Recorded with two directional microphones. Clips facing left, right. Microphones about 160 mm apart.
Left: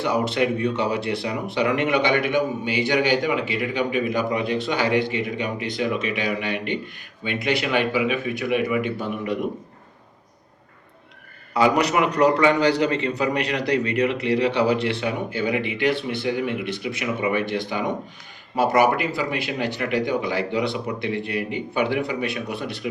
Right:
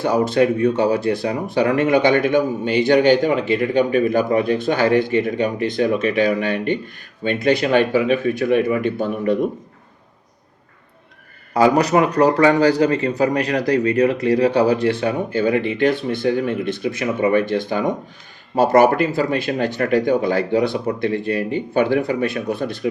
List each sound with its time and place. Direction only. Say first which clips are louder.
0.0 s a man's voice: right 5 dB; 40° right (ahead or behind)
11.5 s a man's voice: right 4 dB; 40° right (ahead or behind)
21.1 s speech: right 5 dB; 15° left (ahead or behind)
21.7 s speech: right 6 dB; 45° right (ahead or behind)